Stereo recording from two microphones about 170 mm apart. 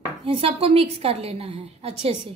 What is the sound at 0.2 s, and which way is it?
A woman's voice, 35° right (ahead or behind).